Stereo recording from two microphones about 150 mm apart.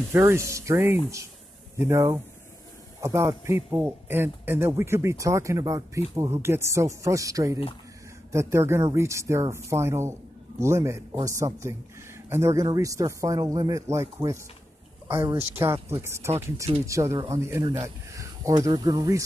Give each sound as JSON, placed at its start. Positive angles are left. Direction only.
{"t": 0.1, "sound": "a man's voice", "side_deg": -20}